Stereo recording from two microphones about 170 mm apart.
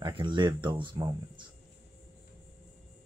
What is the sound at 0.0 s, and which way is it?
Speech, 30° right (ahead or behind).